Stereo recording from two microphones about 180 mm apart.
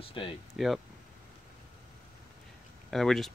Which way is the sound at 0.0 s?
30° left (ahead or behind).